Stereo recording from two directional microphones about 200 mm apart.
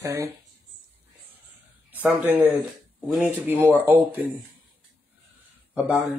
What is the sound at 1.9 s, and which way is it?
Speech, 10° right (ahead or behind).